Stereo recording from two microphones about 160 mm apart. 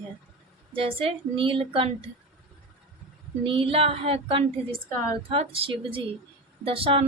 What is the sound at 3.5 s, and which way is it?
A woman's voice, 35° right (ahead or behind).